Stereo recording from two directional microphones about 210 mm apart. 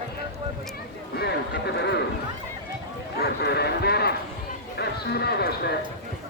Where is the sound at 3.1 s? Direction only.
50° left (ahead or behind).